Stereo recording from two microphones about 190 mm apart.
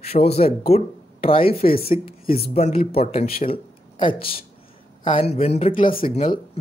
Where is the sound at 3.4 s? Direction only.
25° left (ahead or behind).